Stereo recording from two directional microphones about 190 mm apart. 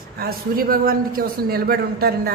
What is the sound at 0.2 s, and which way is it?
A man's voice, 50° right (ahead or behind).